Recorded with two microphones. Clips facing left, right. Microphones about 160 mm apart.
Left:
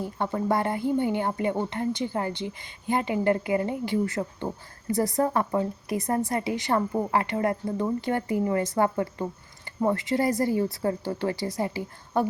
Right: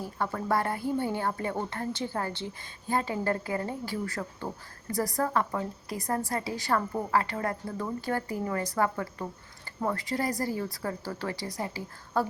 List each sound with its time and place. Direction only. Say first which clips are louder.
0.0 s a woman's voice: left 5 dB; 25° left (ahead or behind)